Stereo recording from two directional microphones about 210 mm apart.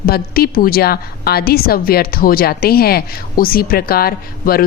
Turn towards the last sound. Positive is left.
turn(degrees=45)  # may be behind; listen again after turning